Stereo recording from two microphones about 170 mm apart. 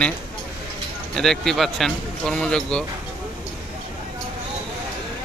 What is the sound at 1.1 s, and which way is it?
Speech, centre (ahead or behind).